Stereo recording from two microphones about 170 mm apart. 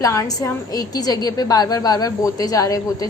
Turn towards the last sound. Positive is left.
turn(degrees=20)  # may be behind; listen again after turning